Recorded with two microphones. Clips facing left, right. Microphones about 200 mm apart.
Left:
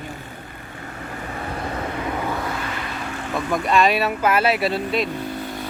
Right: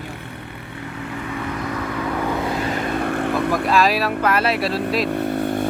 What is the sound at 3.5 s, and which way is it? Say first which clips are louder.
Speech: left 2 dB; centre (ahead or behind).